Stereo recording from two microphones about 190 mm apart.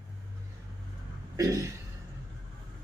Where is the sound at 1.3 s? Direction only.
15° right (ahead or behind).